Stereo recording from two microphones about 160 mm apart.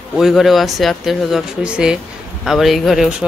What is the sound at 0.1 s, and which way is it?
Speech, centre (ahead or behind).